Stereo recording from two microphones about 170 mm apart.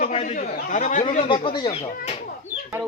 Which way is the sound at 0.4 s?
60° left (ahead or behind).